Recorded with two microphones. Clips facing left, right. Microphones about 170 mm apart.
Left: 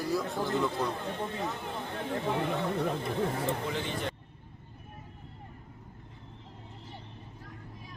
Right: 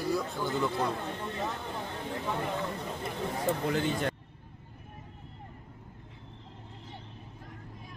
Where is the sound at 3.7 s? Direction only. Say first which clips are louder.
Right 4 dB; 50° right (ahead or behind).